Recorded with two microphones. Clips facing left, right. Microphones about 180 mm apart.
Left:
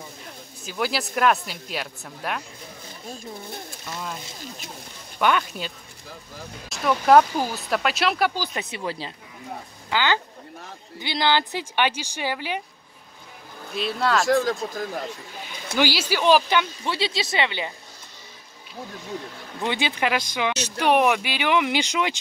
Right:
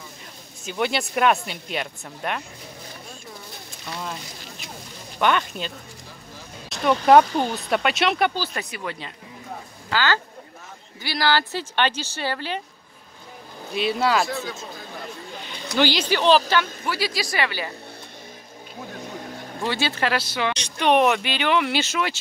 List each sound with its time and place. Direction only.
0.7 s speech: centre (ahead or behind)
5.2 s speech: 5° left (ahead or behind)
6.7 s a sound: centre (ahead or behind)
7.1 s speech: centre (ahead or behind)
8.4 s speech: 20° left (ahead or behind)
9.8 s speech: 15° left (ahead or behind)
13.7 s speech: centre (ahead or behind)
14.2 s speech: 90° left
15.7 s speech: 10° left (ahead or behind)
19.6 s speech: 15° left (ahead or behind)